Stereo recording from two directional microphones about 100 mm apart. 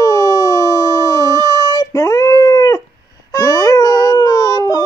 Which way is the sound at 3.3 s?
35° left (ahead or behind).